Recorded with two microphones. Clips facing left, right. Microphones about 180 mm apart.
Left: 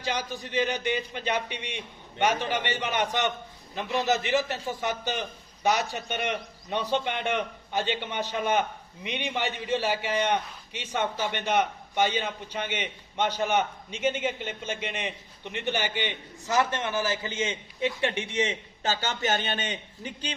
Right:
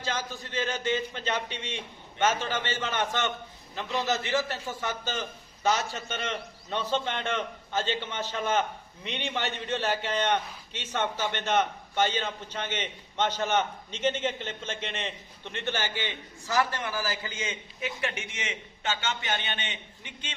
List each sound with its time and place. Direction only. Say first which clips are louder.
0.0 s a man's voice: left 2 dB; 15° left (ahead or behind); by 20.3 s 40° left (ahead or behind)